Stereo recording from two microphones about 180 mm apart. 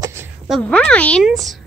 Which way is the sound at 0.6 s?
10° left (ahead or behind).